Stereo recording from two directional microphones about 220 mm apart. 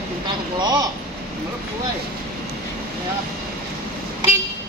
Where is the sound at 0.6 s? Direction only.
20° right (ahead or behind).